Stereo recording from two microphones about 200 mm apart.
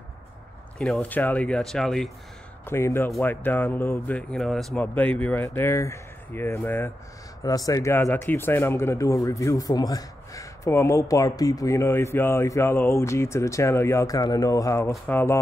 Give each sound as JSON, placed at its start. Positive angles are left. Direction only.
{"t": 0.7, "sound": "speech", "side_deg": 5}
{"t": 2.6, "sound": "speech", "side_deg": 10}